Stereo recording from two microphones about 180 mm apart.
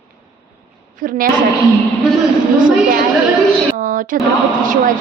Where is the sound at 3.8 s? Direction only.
50° right (ahead or behind).